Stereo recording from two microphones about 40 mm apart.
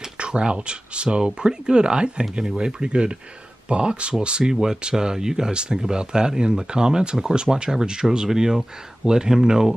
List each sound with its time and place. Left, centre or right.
0.2 s speech: right